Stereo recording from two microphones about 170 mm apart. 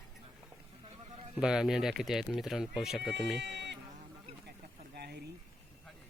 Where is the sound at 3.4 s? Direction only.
90° right.